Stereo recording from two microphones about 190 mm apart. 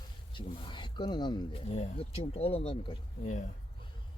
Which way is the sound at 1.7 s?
35° left (ahead or behind).